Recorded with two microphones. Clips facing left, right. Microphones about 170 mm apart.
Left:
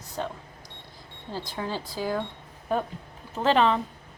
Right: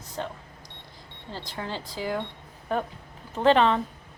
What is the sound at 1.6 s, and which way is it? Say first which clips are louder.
Speech: left 2 dB; 10° left (ahead or behind).